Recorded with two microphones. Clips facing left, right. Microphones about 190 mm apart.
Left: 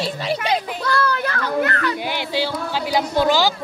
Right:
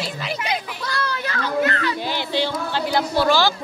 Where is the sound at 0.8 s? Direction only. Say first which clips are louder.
Left 5 dB; 55° left (ahead or behind).